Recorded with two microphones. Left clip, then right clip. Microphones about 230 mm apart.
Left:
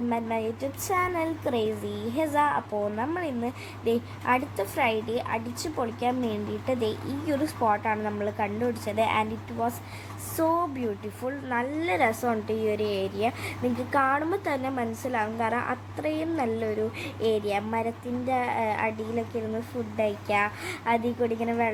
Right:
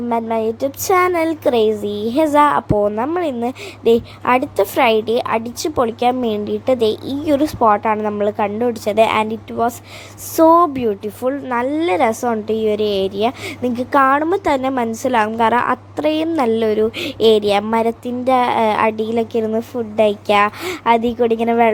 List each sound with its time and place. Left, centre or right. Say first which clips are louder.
0.1 s a woman's voice: right 13 dB; right